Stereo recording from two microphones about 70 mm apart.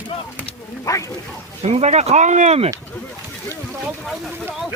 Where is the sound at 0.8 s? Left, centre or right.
Left.